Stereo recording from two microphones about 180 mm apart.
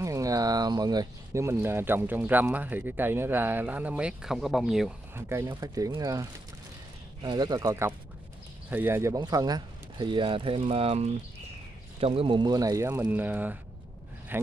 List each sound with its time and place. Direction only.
0.0 s speech: 20° right (ahead or behind); by 4.9 s centre (ahead or behind)
5.1 s speech: 15° right (ahead or behind)
7.2 s speech: 25° right (ahead or behind)